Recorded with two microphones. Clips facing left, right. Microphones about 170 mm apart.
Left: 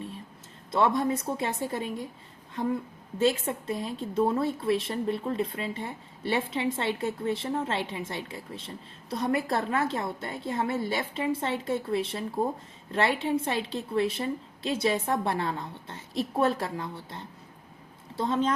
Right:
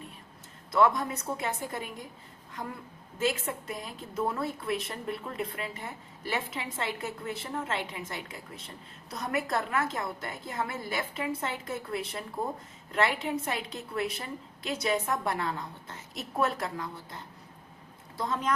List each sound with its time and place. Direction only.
0.7 s a woman's voice: 30° left (ahead or behind)
3.2 s a woman's voice: 30° left (ahead or behind)
18.2 s a woman's voice: 25° left (ahead or behind)